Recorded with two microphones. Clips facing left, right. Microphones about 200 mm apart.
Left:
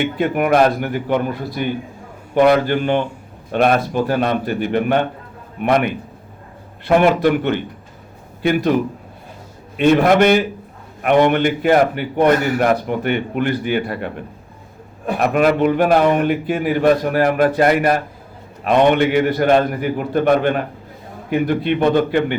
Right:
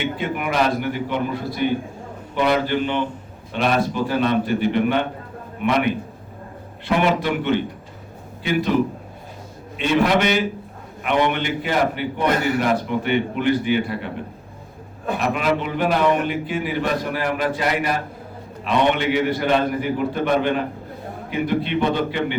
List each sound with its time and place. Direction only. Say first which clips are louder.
0.2 s a man's voice: left 9 dB; 50° left (ahead or behind)
6.8 s a man's voice: left 6 dB; 50° left (ahead or behind)
9.7 s a man's voice: left 6 dB; 50° left (ahead or behind)
15.2 s a man's voice: left 8 dB; 50° left (ahead or behind)